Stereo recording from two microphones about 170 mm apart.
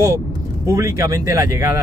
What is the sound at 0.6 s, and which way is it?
Speech, 20° right (ahead or behind).